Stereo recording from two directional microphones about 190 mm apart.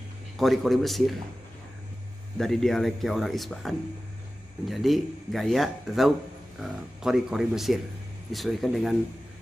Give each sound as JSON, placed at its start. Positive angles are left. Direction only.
{"t": 0.4, "sound": "speech", "side_deg": 0}
{"t": 2.3, "sound": "speech", "side_deg": 0}